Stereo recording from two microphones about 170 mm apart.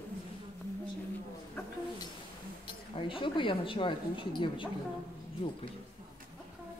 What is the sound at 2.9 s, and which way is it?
A woman's voice, 30° left (ahead or behind).